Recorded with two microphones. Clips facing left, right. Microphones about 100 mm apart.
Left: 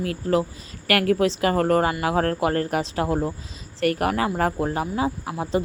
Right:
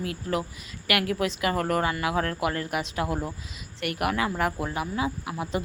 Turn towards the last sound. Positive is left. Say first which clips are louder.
# left 5 dB
turn(degrees=35)  # may be behind; listen again after turning